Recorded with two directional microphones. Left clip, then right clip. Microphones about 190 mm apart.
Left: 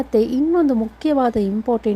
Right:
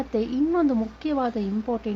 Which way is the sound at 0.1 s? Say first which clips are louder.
Left 8 dB; 30° left (ahead or behind).